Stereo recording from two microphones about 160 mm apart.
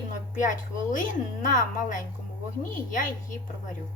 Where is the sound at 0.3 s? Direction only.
55° left (ahead or behind).